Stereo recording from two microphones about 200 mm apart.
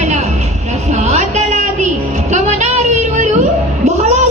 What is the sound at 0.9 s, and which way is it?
A woman's voice, 35° right (ahead or behind).